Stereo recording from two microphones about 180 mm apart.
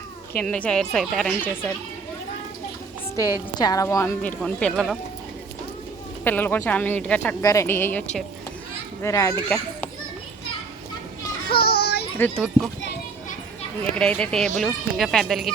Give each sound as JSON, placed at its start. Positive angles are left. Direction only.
{"t": 0.3, "sound": "speech", "side_deg": 5}
{"t": 3.2, "sound": "speech", "side_deg": 20}
{"t": 6.2, "sound": "speech", "side_deg": 10}
{"t": 11.4, "sound": "child singing", "side_deg": 60}
{"t": 12.1, "sound": "speech", "side_deg": 10}
{"t": 13.9, "sound": "speech", "side_deg": 5}